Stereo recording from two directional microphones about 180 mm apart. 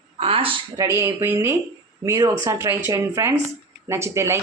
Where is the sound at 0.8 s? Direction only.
15° right (ahead or behind).